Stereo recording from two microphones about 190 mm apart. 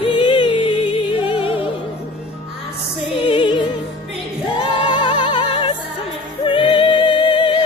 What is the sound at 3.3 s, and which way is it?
Music, 25° left (ahead or behind).